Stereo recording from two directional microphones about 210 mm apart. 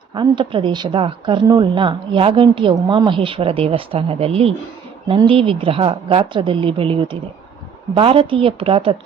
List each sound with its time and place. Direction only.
0.1 s a woman's voice: 20° right (ahead or behind)